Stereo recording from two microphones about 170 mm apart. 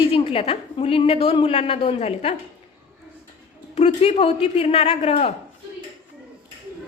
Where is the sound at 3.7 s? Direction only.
40° left (ahead or behind).